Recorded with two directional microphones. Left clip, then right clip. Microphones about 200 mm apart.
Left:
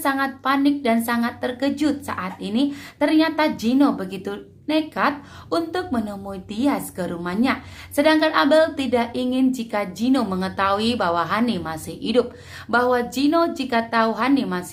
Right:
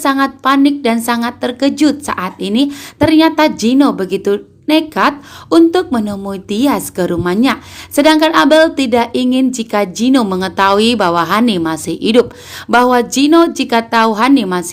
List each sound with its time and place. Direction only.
0.0 s a woman's voice: 40° right (ahead or behind)